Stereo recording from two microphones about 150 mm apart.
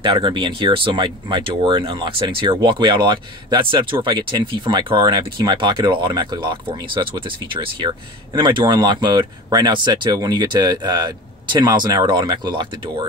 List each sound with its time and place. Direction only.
0.0 s speech: 35° right (ahead or behind)